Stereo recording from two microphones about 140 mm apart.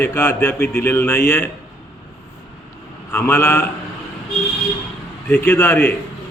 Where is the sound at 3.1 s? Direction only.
20° left (ahead or behind).